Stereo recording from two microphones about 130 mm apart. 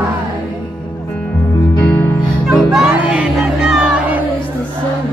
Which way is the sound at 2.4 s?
Centre (ahead or behind).